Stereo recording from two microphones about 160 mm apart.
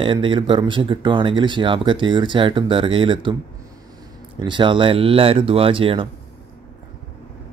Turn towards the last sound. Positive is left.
turn(degrees=-35)  # may be behind; listen again after turning